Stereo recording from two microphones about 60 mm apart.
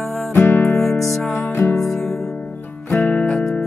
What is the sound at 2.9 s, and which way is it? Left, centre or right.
Music, left.